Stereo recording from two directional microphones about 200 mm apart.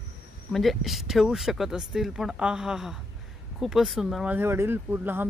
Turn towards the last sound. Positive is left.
turn(degrees=-10)  # may be behind; listen again after turning